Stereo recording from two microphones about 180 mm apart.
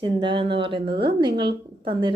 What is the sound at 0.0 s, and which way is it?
A woman's voice, 25° right (ahead or behind).